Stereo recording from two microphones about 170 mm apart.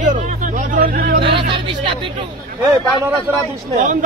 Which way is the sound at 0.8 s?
60° right (ahead or behind).